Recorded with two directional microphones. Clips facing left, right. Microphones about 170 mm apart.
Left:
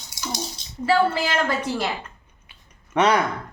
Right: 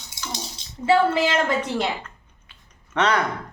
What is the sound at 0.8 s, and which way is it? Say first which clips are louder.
A woman's voice: right 2 dB; 20° right (ahead or behind).